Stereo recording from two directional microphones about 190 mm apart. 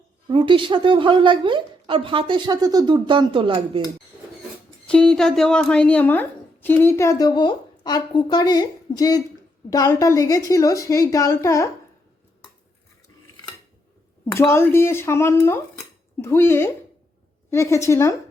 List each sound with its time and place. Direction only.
0.3 s a woman's voice: 25° right (ahead or behind)
4.9 s a woman's voice: 5° left (ahead or behind)
14.3 s a woman's voice: 15° left (ahead or behind)